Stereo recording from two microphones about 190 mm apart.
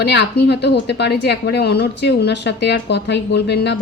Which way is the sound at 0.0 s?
65° left (ahead or behind).